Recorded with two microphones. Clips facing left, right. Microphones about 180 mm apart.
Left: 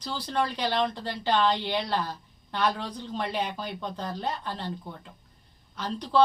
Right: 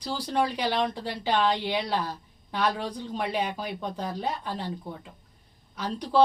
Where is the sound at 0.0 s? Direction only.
10° right (ahead or behind).